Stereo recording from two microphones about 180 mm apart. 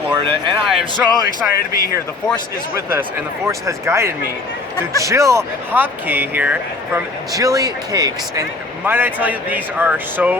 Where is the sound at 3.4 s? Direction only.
15° right (ahead or behind).